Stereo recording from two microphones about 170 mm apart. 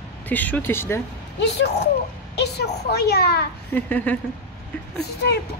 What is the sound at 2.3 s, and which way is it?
A woman's voice, 75° left (ahead or behind).